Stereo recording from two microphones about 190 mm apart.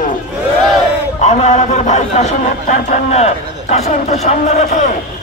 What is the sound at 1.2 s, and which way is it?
Speech, 35° left (ahead or behind).